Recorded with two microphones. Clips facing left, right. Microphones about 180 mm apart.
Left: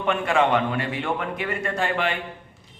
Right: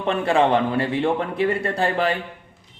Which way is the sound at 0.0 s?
35° right (ahead or behind).